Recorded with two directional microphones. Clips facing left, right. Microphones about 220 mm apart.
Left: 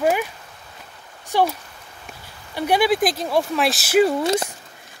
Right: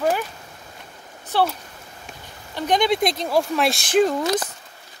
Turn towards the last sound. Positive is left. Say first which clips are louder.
# left 2 dB
turn(degrees=25)  # may be behind; listen again after turning